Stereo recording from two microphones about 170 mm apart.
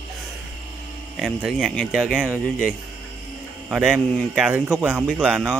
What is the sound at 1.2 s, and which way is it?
A man's voice, centre (ahead or behind).